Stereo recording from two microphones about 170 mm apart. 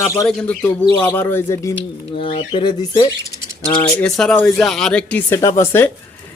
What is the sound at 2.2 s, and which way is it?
Speech, 30° left (ahead or behind).